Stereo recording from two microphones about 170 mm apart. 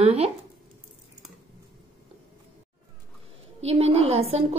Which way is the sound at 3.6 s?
35° right (ahead or behind).